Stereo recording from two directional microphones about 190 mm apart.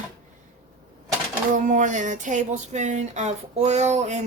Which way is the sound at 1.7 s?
40° right (ahead or behind).